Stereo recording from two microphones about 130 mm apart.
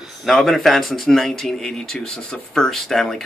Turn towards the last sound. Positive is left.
turn(degrees=5)  # may be behind; listen again after turning